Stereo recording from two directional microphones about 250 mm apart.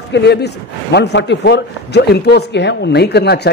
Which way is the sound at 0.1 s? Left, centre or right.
Left.